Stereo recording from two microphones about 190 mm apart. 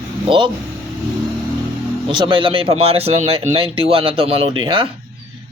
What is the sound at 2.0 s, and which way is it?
A man's voice, 25° right (ahead or behind).